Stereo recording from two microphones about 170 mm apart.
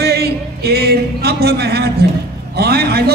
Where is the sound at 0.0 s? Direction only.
70° right (ahead or behind).